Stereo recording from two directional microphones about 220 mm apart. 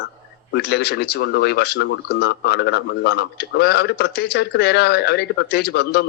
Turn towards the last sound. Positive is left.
turn(degrees=45)  # may be behind; listen again after turning